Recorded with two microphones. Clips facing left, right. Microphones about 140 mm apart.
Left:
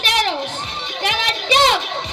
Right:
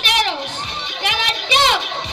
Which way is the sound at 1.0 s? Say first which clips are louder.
Left 1 dB; 35° left (ahead or behind).